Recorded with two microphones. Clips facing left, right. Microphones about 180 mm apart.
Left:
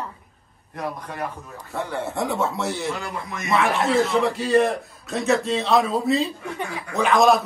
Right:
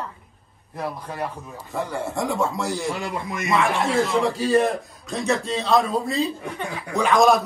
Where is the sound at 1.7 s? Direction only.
Centre (ahead or behind).